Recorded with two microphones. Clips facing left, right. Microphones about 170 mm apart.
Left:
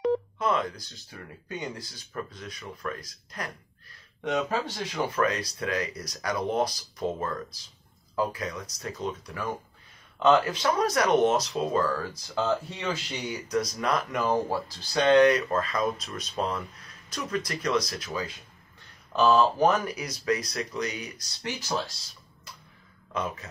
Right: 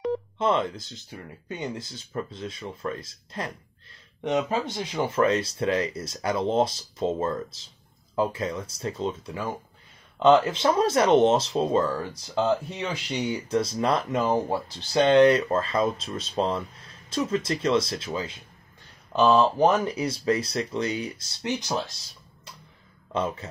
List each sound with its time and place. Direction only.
0.4 s speech: 25° right (ahead or behind)
23.1 s speech: 30° right (ahead or behind)